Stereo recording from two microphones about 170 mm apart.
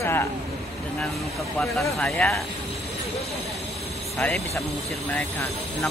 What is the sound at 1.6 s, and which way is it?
Speech, centre (ahead or behind).